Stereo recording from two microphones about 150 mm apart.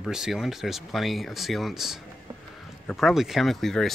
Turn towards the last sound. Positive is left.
turn(degrees=0)  # may be behind; listen again after turning